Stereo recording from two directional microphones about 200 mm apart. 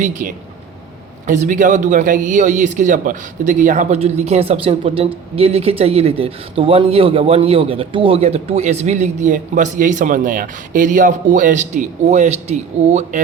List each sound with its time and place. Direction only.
0.0 s speech: 40° right (ahead or behind)